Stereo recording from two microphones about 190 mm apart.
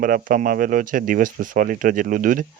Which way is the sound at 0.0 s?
45° right (ahead or behind).